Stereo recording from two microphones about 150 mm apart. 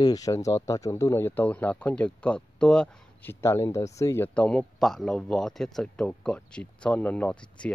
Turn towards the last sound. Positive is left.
turn(degrees=10)  # may be behind; listen again after turning